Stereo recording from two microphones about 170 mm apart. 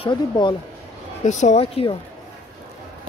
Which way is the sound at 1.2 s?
45° left (ahead or behind).